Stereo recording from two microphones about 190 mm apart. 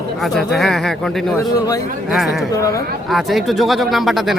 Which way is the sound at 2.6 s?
15° left (ahead or behind).